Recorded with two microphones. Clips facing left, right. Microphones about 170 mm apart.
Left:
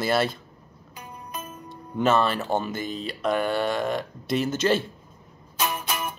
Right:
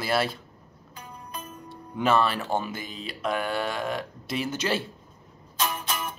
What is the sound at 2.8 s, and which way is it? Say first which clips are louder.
Speech: left 4 dB; 40° left (ahead or behind).